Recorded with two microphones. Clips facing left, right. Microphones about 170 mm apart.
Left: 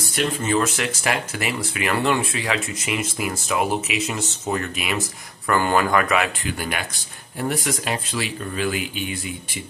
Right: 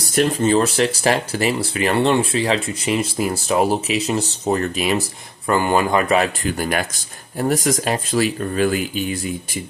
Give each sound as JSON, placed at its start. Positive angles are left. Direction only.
{"t": 0.0, "sound": "speech", "side_deg": -40}
{"t": 5.5, "sound": "speech", "side_deg": -20}